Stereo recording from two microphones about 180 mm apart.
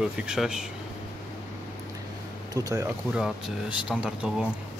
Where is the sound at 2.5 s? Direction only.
20° right (ahead or behind).